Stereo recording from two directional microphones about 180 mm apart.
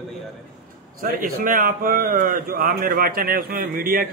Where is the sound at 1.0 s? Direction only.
55° right (ahead or behind).